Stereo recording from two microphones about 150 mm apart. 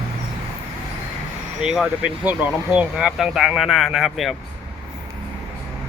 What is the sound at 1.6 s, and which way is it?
Speech, 5° right (ahead or behind).